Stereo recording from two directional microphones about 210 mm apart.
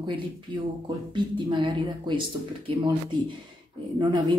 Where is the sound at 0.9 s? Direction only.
20° right (ahead or behind).